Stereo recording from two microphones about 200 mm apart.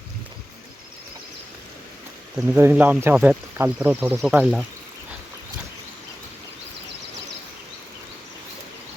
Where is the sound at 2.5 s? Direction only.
10° right (ahead or behind).